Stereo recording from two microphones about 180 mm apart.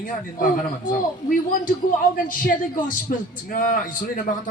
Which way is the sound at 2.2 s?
50° left (ahead or behind).